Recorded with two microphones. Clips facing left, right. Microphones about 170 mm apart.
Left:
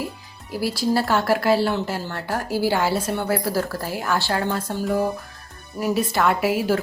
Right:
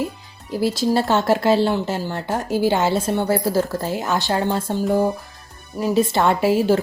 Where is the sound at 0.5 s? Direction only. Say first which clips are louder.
Right 3 dB; 20° right (ahead or behind).